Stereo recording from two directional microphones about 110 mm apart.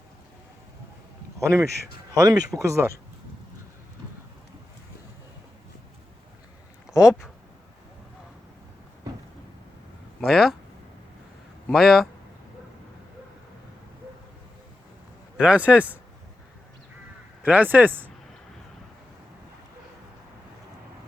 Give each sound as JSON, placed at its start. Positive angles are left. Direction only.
{"t": 1.4, "sound": "speech", "side_deg": -25}
{"t": 6.8, "sound": "a sound", "side_deg": -5}
{"t": 10.2, "sound": "speech", "side_deg": 0}
{"t": 11.7, "sound": "a man's voice", "side_deg": 0}
{"t": 15.4, "sound": "speech", "side_deg": -10}
{"t": 17.4, "sound": "speech", "side_deg": -15}